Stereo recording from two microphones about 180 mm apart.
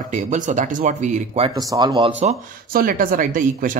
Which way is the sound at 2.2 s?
45° right (ahead or behind).